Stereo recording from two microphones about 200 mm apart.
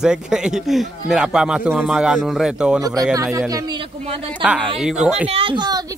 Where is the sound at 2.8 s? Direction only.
20° right (ahead or behind).